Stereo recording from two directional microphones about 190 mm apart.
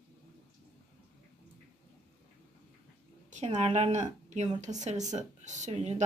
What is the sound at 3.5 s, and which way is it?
Speech, 35° right (ahead or behind).